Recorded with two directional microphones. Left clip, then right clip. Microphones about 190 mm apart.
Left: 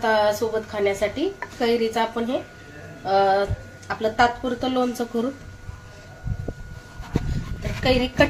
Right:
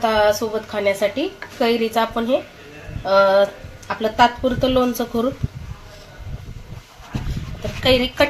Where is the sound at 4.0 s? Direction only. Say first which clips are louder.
Right 4 dB; 20° right (ahead or behind).